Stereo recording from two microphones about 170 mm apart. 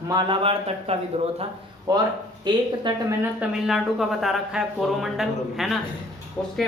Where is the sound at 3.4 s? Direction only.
5° right (ahead or behind).